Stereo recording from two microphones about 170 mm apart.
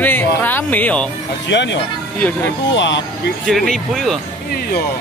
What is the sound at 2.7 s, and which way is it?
Speech, 90° left.